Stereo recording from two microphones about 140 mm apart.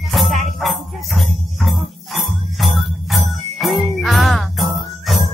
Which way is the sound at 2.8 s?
Centre (ahead or behind).